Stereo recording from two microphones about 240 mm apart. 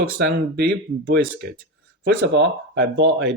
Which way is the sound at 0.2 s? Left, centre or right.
Right.